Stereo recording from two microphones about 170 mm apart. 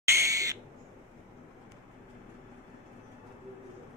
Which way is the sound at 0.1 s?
20° right (ahead or behind).